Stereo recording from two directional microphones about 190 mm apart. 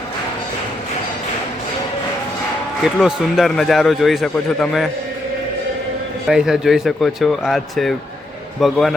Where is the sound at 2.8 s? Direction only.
Centre (ahead or behind).